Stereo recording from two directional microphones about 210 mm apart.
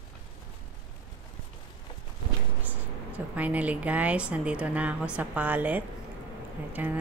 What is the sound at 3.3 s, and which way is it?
Speech, 5° right (ahead or behind).